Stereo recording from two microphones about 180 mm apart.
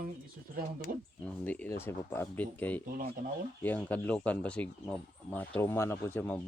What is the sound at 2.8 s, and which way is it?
Speech, 55° right (ahead or behind).